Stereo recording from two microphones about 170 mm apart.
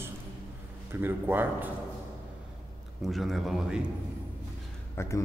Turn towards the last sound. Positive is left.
turn(degrees=15)  # may be behind; listen again after turning